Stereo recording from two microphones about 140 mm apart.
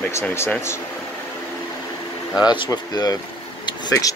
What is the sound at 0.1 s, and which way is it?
Speech, 20° left (ahead or behind).